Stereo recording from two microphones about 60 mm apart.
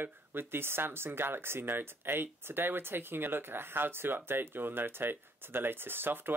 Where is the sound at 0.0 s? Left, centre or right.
Right.